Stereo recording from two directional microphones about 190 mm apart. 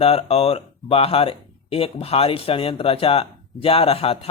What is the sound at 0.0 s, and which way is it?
Speech, 30° left (ahead or behind).